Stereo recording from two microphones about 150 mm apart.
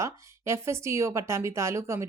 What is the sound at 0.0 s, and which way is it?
Speech, 20° right (ahead or behind).